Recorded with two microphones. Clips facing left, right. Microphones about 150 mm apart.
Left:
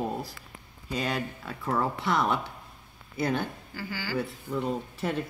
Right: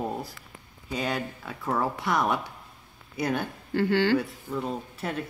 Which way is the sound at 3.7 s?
65° right (ahead or behind).